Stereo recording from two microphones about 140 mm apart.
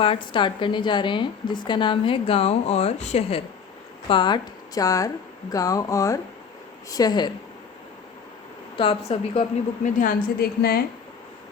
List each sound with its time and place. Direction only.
0.0 s speech: 35° left (ahead or behind)
4.1 s speech: 35° left (ahead or behind)
8.8 s speech: 40° left (ahead or behind)
9.8 s a woman's voice: 75° left (ahead or behind); by 10.8 s 90° left